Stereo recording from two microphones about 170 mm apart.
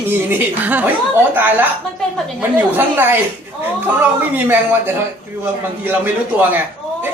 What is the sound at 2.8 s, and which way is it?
Speech, 10° right (ahead or behind).